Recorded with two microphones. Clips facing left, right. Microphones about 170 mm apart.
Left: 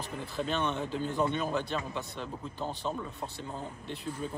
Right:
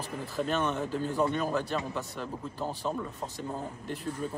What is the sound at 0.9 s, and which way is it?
Speech, 40° right (ahead or behind).